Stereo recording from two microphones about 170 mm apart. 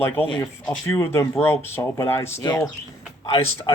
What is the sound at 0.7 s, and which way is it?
Speech, 15° left (ahead or behind).